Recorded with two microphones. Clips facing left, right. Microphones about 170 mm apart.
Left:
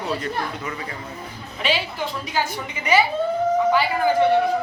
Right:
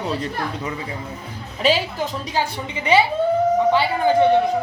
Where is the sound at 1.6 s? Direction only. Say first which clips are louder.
Right 5 dB; 40° right (ahead or behind).